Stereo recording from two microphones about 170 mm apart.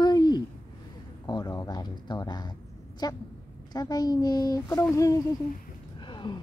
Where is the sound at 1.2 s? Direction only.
25° left (ahead or behind).